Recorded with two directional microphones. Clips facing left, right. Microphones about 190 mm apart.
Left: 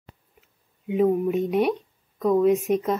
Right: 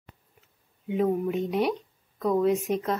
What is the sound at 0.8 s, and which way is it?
Speech, 15° left (ahead or behind).